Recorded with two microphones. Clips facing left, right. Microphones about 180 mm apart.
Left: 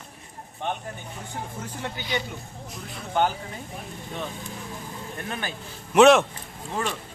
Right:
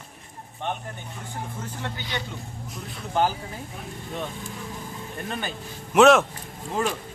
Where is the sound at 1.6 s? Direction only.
15° left (ahead or behind).